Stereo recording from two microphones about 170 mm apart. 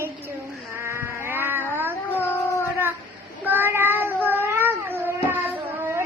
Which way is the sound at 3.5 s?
10° right (ahead or behind).